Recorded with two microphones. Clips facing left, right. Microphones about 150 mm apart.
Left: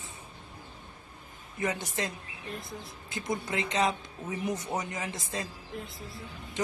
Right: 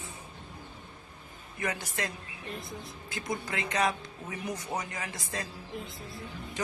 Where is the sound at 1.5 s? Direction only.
20° left (ahead or behind).